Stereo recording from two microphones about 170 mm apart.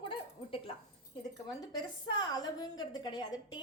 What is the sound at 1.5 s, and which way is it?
A woman's voice, 20° left (ahead or behind).